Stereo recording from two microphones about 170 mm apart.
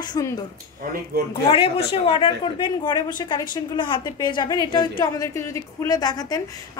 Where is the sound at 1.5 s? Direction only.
35° left (ahead or behind).